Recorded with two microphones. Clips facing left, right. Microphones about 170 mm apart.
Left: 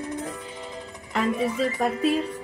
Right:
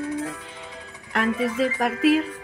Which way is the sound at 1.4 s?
85° right.